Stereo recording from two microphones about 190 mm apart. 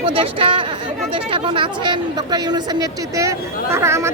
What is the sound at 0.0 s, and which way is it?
Speech, 30° right (ahead or behind).